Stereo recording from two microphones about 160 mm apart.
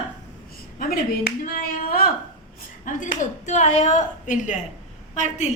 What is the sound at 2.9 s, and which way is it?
A woman's voice, 50° left (ahead or behind).